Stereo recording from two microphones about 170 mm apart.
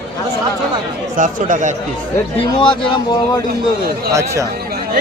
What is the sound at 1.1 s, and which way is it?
Speech, 50° right (ahead or behind).